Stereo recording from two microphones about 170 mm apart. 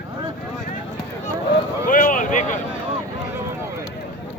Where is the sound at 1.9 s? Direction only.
50° left (ahead or behind).